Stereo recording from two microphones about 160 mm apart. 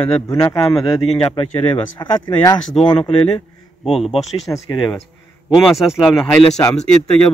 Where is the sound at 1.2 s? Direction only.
40° left (ahead or behind).